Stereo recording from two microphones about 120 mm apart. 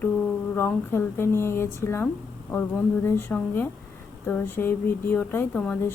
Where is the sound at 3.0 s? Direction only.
15° left (ahead or behind).